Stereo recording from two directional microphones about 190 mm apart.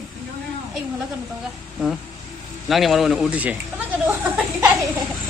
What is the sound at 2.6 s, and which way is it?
Speech, centre (ahead or behind).